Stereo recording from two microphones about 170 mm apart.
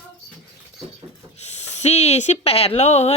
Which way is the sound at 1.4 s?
40° left (ahead or behind).